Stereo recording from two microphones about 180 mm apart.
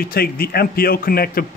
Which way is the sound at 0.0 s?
55° left (ahead or behind).